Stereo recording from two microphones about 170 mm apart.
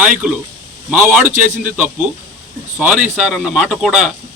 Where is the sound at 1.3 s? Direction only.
50° right (ahead or behind).